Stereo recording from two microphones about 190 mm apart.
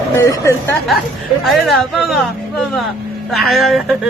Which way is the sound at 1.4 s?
Centre (ahead or behind).